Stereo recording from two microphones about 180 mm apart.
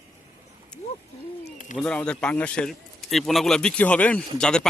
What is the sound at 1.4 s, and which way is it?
Speech, 45° left (ahead or behind).